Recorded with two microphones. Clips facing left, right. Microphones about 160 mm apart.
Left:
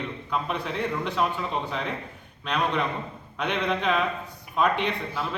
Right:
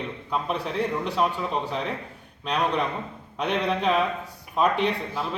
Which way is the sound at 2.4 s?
35° right (ahead or behind).